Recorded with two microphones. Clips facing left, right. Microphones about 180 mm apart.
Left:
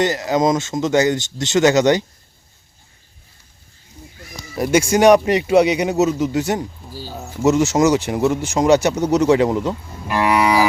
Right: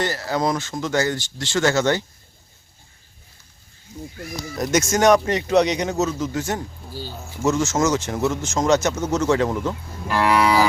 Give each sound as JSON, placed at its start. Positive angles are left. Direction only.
{"t": 0.0, "sound": "speech", "side_deg": 20}
{"t": 4.5, "sound": "a man's voice", "side_deg": 10}